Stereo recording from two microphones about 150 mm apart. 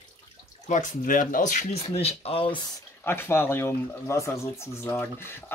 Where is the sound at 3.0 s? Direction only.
15° left (ahead or behind).